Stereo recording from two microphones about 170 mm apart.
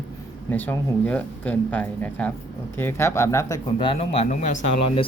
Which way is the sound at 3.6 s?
30° left (ahead or behind).